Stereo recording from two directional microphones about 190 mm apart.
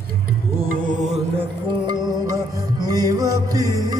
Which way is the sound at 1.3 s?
20° right (ahead or behind).